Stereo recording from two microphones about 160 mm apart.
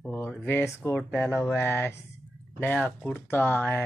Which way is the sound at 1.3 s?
5° right (ahead or behind).